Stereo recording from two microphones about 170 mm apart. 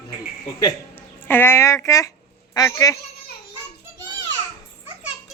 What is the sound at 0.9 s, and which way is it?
A man's voice, 10° left (ahead or behind).